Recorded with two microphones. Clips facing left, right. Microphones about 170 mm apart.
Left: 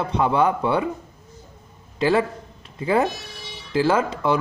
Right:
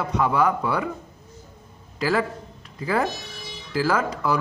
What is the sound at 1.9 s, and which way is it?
A man's voice, 25° left (ahead or behind).